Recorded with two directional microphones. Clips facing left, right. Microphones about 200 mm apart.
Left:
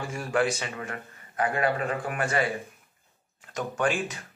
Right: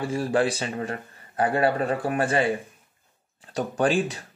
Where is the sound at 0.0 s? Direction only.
30° right (ahead or behind).